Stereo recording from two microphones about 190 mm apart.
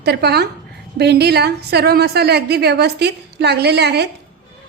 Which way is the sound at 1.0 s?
60° right (ahead or behind).